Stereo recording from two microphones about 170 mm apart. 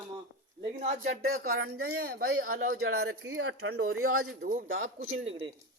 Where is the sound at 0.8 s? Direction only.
45° right (ahead or behind).